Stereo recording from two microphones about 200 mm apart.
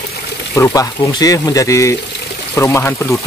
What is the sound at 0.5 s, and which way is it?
Speech, 15° left (ahead or behind).